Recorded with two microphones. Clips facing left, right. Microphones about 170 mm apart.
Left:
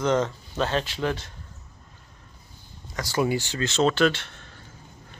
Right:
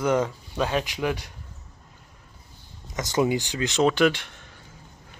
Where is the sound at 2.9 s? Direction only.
20° right (ahead or behind).